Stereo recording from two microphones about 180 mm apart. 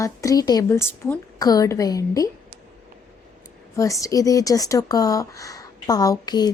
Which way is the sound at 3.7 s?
15° left (ahead or behind).